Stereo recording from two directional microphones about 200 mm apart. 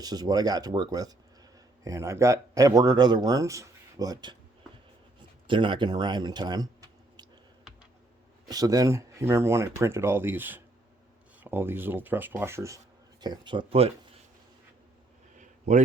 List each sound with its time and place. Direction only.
0.0 s speech: 20° right (ahead or behind)
5.5 s speech: 25° right (ahead or behind)
8.4 s speech: 20° right (ahead or behind)
15.4 s a sound: 35° right (ahead or behind)